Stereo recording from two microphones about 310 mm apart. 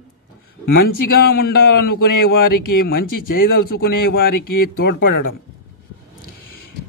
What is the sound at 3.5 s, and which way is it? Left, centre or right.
Speech, left.